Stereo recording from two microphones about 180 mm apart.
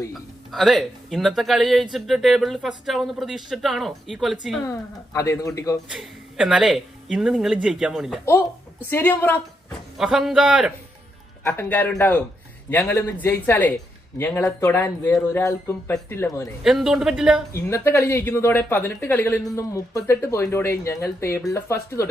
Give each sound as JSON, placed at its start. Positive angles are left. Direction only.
{"t": 0.1, "sound": "speech", "side_deg": 0}
{"t": 4.6, "sound": "speech", "side_deg": 15}
{"t": 5.9, "sound": "speech", "side_deg": -5}
{"t": 8.9, "sound": "speech", "side_deg": 10}
{"t": 9.9, "sound": "speech", "side_deg": 0}
{"t": 11.4, "sound": "speech", "side_deg": 10}
{"t": 16.6, "sound": "speech", "side_deg": 0}
{"t": 17.5, "sound": "speech", "side_deg": 15}